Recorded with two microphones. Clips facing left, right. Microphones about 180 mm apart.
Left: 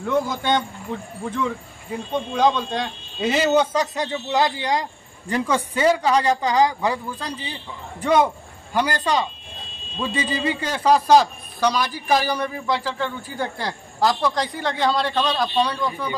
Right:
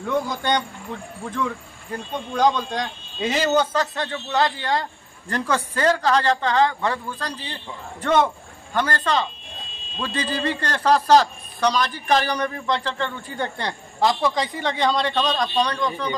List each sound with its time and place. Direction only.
0.0 s a man's voice: centre (ahead or behind)
3.7 s a woman's voice: 15° left (ahead or behind)